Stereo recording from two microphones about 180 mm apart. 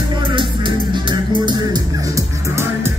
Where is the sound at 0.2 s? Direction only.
25° right (ahead or behind).